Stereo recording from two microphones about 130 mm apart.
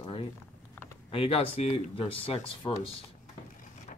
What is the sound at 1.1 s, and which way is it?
Speech, 50° left (ahead or behind).